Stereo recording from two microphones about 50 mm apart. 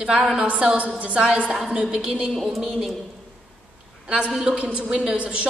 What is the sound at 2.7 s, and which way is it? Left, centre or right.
Speech, centre.